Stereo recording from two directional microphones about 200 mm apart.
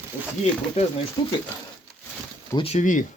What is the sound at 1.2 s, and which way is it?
Speech, 20° left (ahead or behind).